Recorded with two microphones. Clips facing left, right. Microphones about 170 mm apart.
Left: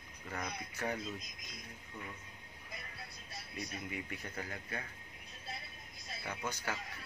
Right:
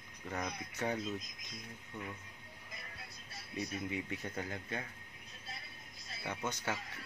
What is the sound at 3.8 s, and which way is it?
Speech, 25° right (ahead or behind).